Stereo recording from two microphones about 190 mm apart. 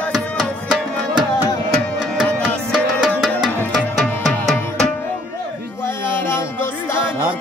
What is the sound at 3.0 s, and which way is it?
Music, centre (ahead or behind).